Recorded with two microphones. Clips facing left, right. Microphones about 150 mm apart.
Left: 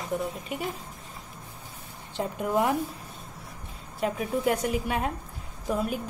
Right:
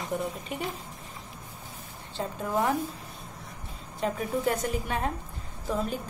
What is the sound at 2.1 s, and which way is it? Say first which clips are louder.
Speech: left 3 dB; 15° left (ahead or behind).